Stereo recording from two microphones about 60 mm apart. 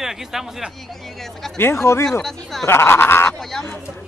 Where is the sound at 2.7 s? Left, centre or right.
Left.